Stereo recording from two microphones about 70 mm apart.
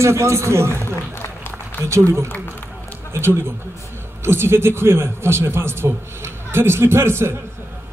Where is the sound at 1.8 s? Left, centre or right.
Right.